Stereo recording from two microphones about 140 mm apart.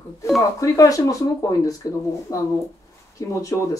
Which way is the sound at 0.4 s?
25° left (ahead or behind).